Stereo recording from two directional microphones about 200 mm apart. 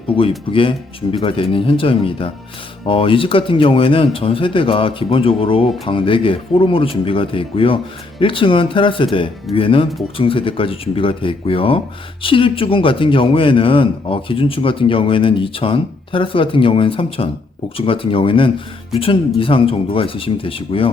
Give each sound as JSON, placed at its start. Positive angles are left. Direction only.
{"t": 0.2, "sound": "a man's voice", "side_deg": 25}